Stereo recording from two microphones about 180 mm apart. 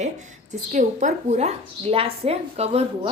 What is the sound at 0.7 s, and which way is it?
Speech, 40° right (ahead or behind).